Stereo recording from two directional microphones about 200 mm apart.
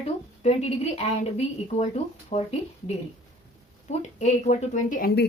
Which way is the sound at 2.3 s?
30° left (ahead or behind).